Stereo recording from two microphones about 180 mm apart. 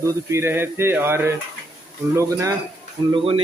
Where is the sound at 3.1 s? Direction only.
30° right (ahead or behind).